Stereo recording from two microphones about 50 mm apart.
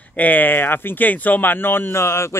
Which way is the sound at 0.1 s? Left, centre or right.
Left.